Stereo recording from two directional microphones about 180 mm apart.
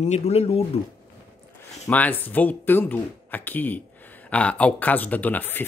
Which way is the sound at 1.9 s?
10° left (ahead or behind).